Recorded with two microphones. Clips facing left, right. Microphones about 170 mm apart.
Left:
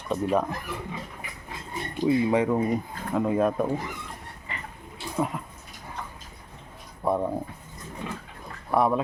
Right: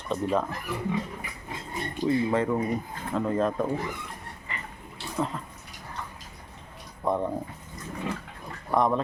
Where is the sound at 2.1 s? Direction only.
15° left (ahead or behind).